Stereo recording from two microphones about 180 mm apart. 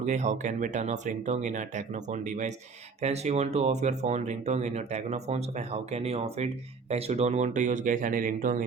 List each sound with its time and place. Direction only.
0.0 s speech: 40° right (ahead or behind)